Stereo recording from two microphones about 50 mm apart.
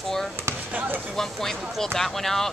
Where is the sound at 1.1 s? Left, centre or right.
Centre.